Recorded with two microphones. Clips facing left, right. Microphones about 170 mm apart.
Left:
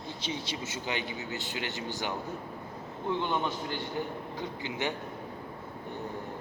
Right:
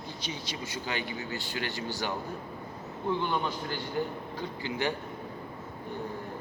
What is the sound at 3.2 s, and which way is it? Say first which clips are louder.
A man's voice: even; 20° left (ahead or behind).